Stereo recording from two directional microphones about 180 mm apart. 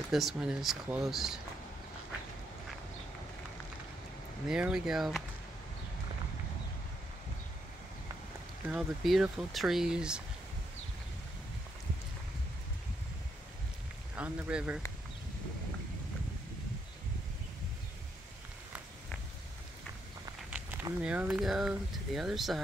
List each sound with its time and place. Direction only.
0.1 s speech: centre (ahead or behind)
4.5 s speech: 5° right (ahead or behind)
8.6 s speech: 5° right (ahead or behind)
14.1 s speech: 5° right (ahead or behind)
20.4 s a sound: 10° right (ahead or behind)
21.0 s speech: 5° right (ahead or behind)